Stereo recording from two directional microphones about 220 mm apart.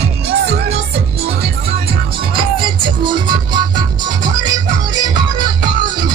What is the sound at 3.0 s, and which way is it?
Music, 20° right (ahead or behind).